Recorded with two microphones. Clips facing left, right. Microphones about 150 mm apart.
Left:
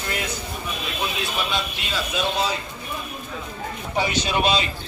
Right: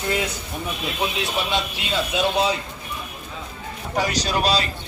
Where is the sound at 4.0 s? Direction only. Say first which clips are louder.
Even; 40° right (ahead or behind).